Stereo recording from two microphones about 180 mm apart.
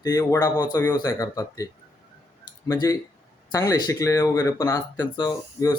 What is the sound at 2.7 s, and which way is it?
Speech, 20° left (ahead or behind).